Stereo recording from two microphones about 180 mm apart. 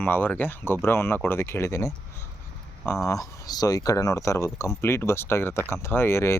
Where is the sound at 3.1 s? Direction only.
20° left (ahead or behind).